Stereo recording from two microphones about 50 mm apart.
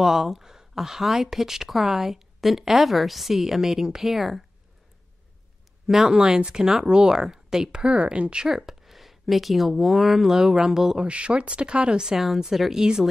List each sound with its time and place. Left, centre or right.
0.0 s speech: centre
5.9 s speech: centre
8.5 s speech: centre
11.0 s speech: right